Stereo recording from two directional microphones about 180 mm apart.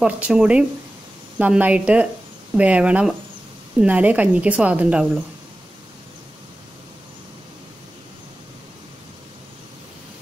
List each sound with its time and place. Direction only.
0.0 s a woman's voice: 5° right (ahead or behind)